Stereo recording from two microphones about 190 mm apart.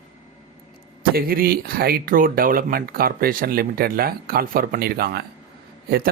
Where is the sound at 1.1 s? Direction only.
50° right (ahead or behind).